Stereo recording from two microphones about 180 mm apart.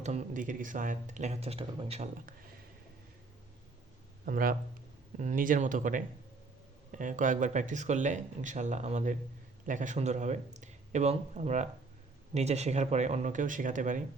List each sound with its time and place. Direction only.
0.0 s speech: 40° right (ahead or behind)
4.3 s speech: 50° right (ahead or behind)